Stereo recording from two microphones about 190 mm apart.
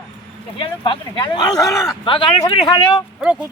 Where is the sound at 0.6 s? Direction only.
25° left (ahead or behind).